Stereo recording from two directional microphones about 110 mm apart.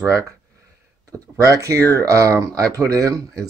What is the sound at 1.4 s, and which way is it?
Speech, 30° right (ahead or behind).